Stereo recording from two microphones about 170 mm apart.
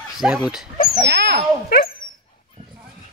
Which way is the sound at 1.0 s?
70° right (ahead or behind).